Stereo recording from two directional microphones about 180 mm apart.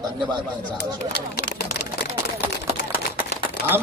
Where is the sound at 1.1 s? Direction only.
75° left (ahead or behind).